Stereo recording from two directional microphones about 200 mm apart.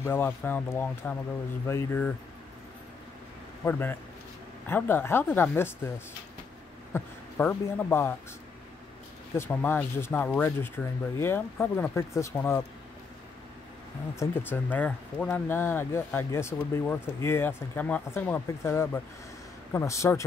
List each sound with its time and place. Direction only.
0.0 s speech: 10° left (ahead or behind)
3.6 s speech: 10° left (ahead or behind)
6.9 s a man's voice: 10° left (ahead or behind)
9.4 s speech: 10° left (ahead or behind)
14.1 s speech: 10° left (ahead or behind)